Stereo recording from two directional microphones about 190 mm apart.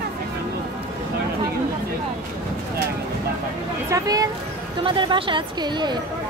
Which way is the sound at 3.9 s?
20° right (ahead or behind).